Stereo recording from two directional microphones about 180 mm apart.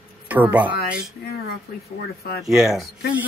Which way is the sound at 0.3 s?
10° right (ahead or behind).